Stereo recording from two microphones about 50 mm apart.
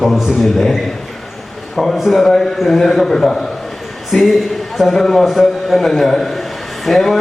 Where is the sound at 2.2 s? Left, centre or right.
Centre.